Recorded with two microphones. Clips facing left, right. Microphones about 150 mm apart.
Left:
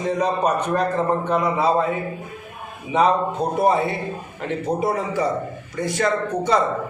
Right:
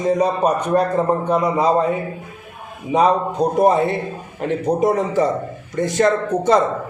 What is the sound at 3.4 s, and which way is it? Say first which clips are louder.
Speech: right 5 dB; 35° right (ahead or behind).